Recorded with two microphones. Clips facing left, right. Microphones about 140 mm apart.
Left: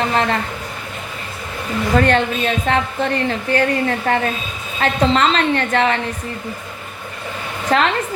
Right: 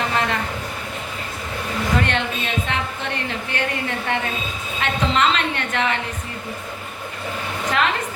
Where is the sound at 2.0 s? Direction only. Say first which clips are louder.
Left 7 dB; 40° left (ahead or behind).